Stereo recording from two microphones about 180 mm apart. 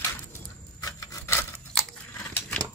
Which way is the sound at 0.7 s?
20° left (ahead or behind).